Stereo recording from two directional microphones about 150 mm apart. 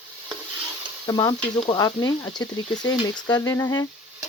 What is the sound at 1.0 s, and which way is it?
Speech, 30° left (ahead or behind).